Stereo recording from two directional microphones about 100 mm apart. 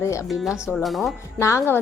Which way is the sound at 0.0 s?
30° left (ahead or behind).